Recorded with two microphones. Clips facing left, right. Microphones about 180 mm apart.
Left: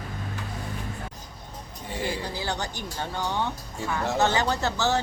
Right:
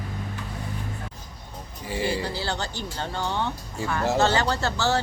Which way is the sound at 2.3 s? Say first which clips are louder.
Right 1 dB; 15° left (ahead or behind).